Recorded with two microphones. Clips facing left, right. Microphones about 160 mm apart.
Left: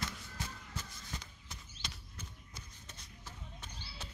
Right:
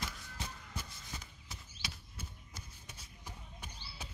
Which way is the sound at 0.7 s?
10° right (ahead or behind).